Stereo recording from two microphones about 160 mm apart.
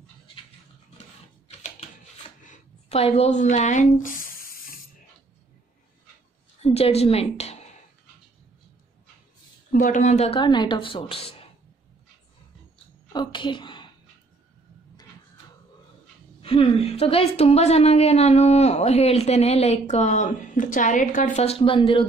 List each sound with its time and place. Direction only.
2.4 s a sound: 45° left (ahead or behind); by 4.7 s 65° left (ahead or behind)
6.6 s a woman's voice: 40° left (ahead or behind)
9.7 s a woman's voice: 55° left (ahead or behind)
10.4 s a woman's voice: 30° left (ahead or behind)
13.1 s a sound: 30° left (ahead or behind)
16.3 s a woman's voice: 35° left (ahead or behind)